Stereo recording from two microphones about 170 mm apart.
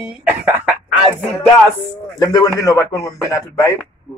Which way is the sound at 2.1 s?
25° left (ahead or behind).